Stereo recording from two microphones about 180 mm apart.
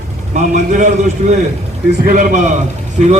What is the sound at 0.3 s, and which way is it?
A man's voice, 45° right (ahead or behind).